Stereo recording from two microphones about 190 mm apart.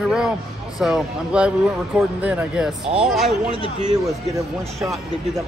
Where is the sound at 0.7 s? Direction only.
5° right (ahead or behind).